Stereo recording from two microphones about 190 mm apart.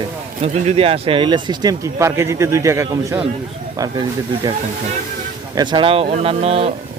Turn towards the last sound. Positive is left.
turn(degrees=-30)  # may be behind; listen again after turning